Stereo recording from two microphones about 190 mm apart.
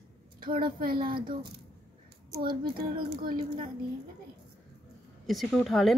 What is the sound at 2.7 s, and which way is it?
Speech, 25° right (ahead or behind).